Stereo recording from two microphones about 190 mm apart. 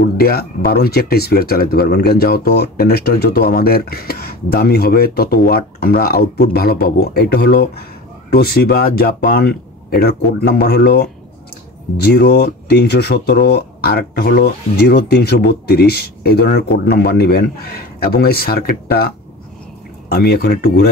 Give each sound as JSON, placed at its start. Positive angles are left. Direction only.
{"t": 0.2, "sound": "speech", "side_deg": 55}